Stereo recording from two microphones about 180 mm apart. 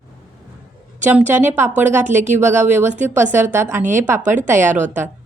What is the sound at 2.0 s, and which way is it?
Speech, 40° right (ahead or behind).